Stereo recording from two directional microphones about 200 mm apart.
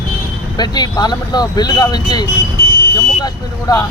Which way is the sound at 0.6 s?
20° left (ahead or behind).